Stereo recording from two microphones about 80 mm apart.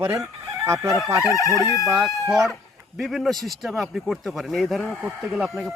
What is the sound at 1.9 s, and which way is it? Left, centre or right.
Speech, centre.